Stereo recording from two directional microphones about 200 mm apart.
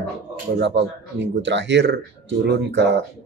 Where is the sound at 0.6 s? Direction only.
60° right (ahead or behind).